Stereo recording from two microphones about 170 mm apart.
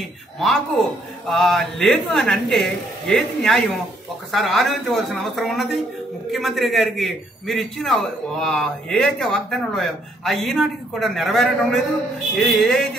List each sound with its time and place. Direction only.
0.4 s a man's voice: centre (ahead or behind)